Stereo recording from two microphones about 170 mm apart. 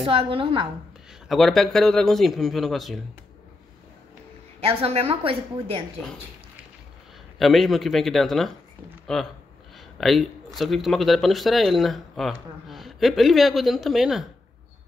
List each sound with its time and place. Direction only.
0.0 s a woman's voice: 30° right (ahead or behind)
1.3 s speech: centre (ahead or behind)
4.6 s a woman's voice: 35° right (ahead or behind)
7.3 s speech: centre (ahead or behind)